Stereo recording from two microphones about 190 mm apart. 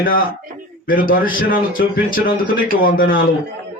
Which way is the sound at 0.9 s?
45° left (ahead or behind).